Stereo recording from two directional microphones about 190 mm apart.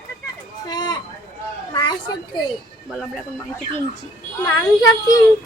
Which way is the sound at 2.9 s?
Centre (ahead or behind).